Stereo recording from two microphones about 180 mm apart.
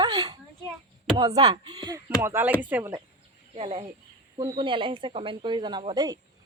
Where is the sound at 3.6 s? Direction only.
30° right (ahead or behind).